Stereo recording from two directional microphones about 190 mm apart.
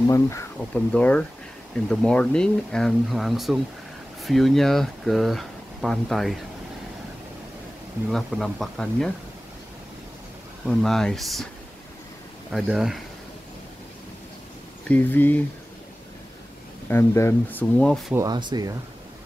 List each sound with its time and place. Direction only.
0.1 s speech: 15° left (ahead or behind)
8.1 s speech: centre (ahead or behind)
10.7 s speech: centre (ahead or behind)
12.4 s speech: 5° right (ahead or behind)
14.9 s speech: 10° left (ahead or behind)
16.9 s speech: 15° left (ahead or behind)
18.1 s speech: 20° right (ahead or behind)